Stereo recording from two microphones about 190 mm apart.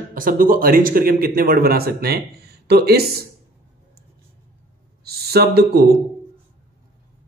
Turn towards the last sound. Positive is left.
turn(degrees=-55)  # may be behind; listen again after turning